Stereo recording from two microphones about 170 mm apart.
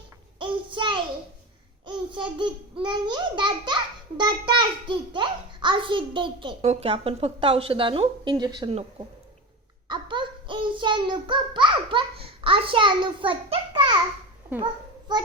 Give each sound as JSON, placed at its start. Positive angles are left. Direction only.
{"t": 0.3, "sound": "child singing", "side_deg": -30}
{"t": 1.9, "sound": "babbling", "side_deg": -30}
{"t": 4.2, "sound": "a child's voice", "side_deg": -25}
{"t": 9.9, "sound": "a child's voice", "side_deg": -30}